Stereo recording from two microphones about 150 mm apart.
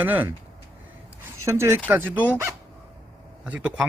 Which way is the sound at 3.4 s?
10° right (ahead or behind).